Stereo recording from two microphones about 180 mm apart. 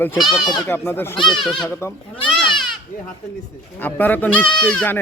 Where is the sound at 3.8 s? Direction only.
10° left (ahead or behind).